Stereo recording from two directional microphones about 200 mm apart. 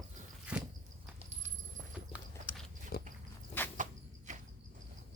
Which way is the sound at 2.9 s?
50° left (ahead or behind).